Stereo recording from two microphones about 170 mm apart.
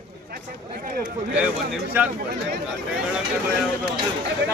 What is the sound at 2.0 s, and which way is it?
Speech, 10° right (ahead or behind).